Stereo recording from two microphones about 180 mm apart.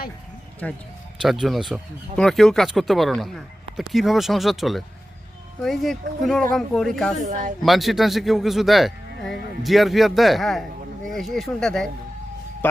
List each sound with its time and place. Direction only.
0.6 s speech: 10° left (ahead or behind)
7.2 s speech: 45° right (ahead or behind)
7.6 s speech: centre (ahead or behind)